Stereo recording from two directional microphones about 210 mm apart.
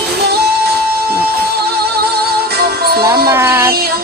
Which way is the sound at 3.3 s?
10° right (ahead or behind).